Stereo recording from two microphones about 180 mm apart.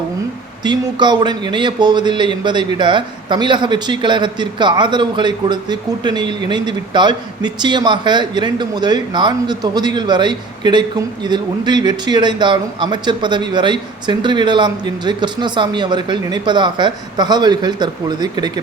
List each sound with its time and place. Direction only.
0.6 s a man's voice: 25° right (ahead or behind)